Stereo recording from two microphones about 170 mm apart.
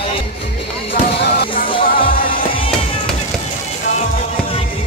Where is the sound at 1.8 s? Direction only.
55° left (ahead or behind).